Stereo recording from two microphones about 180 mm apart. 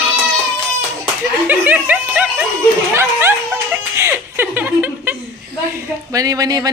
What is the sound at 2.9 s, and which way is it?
Chuckle, 10° right (ahead or behind).